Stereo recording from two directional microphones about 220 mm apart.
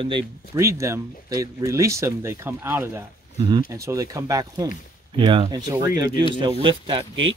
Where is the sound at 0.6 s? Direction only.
15° right (ahead or behind).